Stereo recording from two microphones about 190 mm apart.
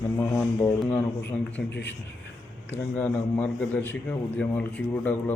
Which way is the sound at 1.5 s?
70° left (ahead or behind).